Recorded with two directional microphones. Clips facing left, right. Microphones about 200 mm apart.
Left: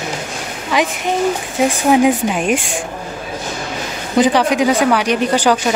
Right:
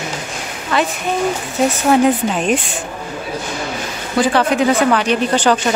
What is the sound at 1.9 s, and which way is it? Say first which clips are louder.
Speech: left 1 dB; 10° left (ahead or behind).